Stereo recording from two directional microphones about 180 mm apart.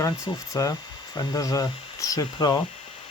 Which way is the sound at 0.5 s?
20° left (ahead or behind).